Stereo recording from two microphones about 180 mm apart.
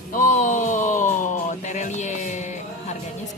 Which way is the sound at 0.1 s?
45° left (ahead or behind).